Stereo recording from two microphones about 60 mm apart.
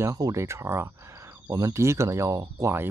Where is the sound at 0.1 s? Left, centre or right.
Right.